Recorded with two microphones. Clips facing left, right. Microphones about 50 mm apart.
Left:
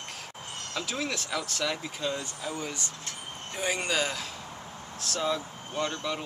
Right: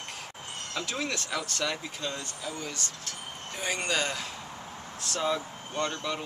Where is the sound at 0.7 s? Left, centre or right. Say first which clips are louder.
Even; centre.